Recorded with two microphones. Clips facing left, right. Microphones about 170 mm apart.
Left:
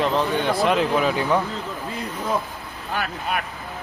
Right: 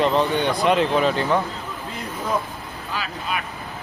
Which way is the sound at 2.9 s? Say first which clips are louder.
Left 2 dB; 60° left (ahead or behind).